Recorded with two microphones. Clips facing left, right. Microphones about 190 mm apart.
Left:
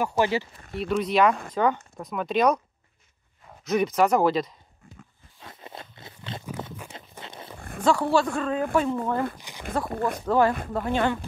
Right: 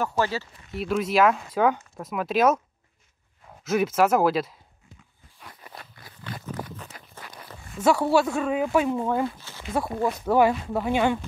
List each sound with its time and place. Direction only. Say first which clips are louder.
0.0 s speech: left 2 dB; 15° left (ahead or behind)
0.7 s speech: even; centre (ahead or behind)
3.6 s speech: even; 5° right (ahead or behind)
5.4 s a sound: left 3 dB; 25° left (ahead or behind)
7.8 s speech: right 1 dB; 10° right (ahead or behind)
9.4 s a sound: left 2 dB; 15° left (ahead or behind)
9.8 s speech: right 1 dB; 55° left (ahead or behind)
10.2 s speech: right 2 dB; 10° right (ahead or behind)